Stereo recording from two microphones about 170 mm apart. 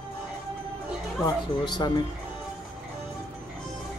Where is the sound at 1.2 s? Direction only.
25° left (ahead or behind).